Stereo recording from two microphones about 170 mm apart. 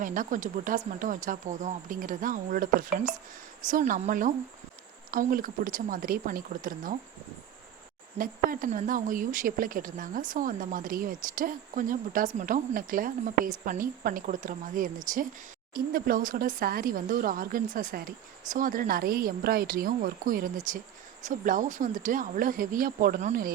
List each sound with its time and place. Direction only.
0.0 s speech: 50° right (ahead or behind)
8.2 s speech: 55° right (ahead or behind)
15.7 s speech: 60° right (ahead or behind)